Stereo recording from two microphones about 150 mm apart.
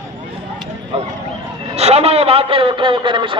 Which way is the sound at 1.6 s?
45° right (ahead or behind).